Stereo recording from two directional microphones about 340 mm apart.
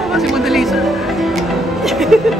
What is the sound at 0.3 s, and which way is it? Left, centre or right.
Music, centre.